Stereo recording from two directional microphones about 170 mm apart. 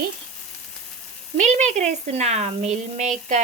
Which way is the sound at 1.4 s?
45° right (ahead or behind).